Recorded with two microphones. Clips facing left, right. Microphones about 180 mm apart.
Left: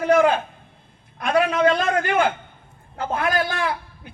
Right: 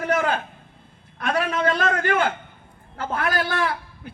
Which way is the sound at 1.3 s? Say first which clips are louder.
Left 5 dB; 25° left (ahead or behind).